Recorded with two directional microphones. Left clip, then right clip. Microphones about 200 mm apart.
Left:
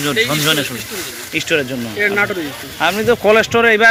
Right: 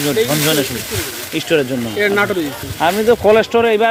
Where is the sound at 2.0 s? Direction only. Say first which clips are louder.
Even; 60° right (ahead or behind).